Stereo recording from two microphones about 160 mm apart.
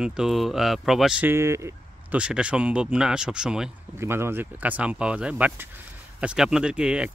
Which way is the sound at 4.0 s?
15° right (ahead or behind).